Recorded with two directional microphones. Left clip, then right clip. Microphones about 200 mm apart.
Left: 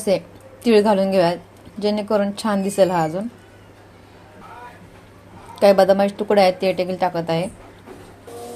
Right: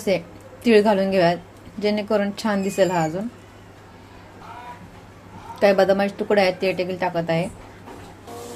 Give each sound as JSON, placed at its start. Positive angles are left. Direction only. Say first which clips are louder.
{"t": 0.1, "sound": "a woman's voice", "louder": "left 3 dB", "side_deg": 15}
{"t": 5.5, "sound": "a woman's voice", "louder": "left 3 dB", "side_deg": 15}